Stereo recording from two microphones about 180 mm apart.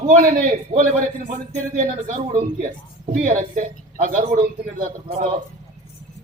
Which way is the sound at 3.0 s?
45° right (ahead or behind).